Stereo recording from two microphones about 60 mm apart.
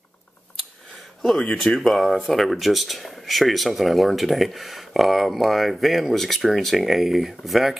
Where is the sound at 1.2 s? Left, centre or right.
Centre.